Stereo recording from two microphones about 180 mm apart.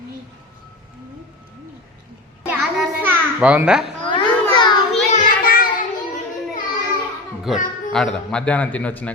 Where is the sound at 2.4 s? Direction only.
10° right (ahead or behind).